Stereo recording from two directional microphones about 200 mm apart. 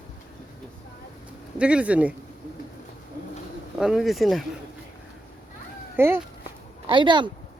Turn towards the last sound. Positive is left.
turn(degrees=-25)  # may be behind; listen again after turning